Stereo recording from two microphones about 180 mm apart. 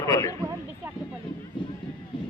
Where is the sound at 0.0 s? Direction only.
20° left (ahead or behind).